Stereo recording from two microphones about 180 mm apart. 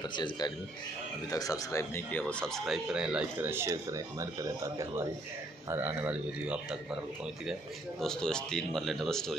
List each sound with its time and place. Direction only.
0.1 s speech: 25° left (ahead or behind); by 6.8 s 5° right (ahead or behind)
8.0 s speech: 5° left (ahead or behind)